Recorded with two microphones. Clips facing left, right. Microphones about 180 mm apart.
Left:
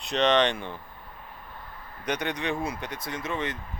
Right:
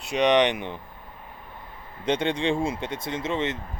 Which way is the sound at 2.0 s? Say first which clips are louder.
Right 5 dB; 25° right (ahead or behind).